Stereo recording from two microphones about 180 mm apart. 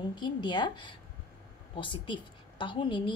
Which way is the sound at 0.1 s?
25° left (ahead or behind).